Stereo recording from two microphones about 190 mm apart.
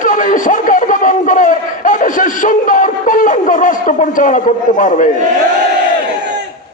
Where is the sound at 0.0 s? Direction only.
40° left (ahead or behind).